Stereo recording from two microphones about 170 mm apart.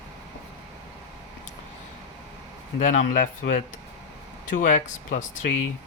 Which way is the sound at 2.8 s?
45° left (ahead or behind).